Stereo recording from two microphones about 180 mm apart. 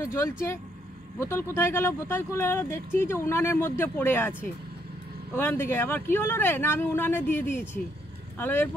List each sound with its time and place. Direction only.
0.0 s speech: 15° left (ahead or behind)